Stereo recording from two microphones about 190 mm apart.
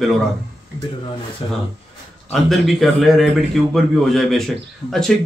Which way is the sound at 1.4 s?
25° left (ahead or behind).